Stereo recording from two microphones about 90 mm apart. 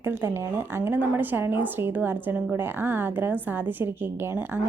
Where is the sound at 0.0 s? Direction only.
25° right (ahead or behind).